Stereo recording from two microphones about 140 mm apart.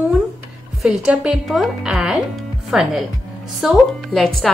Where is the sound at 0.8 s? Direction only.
5° right (ahead or behind).